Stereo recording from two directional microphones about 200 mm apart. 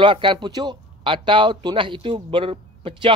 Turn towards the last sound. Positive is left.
turn(degrees=-25)  # may be behind; listen again after turning